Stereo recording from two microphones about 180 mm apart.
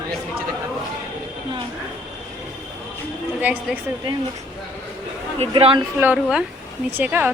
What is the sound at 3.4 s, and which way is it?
Speech, 10° right (ahead or behind).